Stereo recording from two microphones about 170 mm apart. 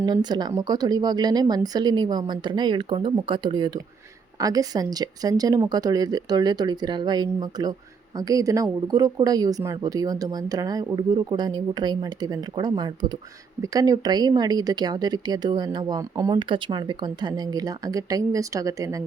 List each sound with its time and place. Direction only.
0.0 s speech: 25° right (ahead or behind)